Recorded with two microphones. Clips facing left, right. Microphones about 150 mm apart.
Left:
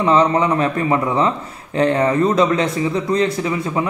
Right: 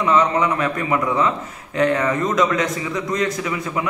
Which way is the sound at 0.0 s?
30° left (ahead or behind).